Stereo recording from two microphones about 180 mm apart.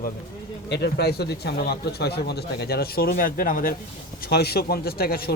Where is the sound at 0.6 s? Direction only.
70° left (ahead or behind); by 3.7 s 50° left (ahead or behind).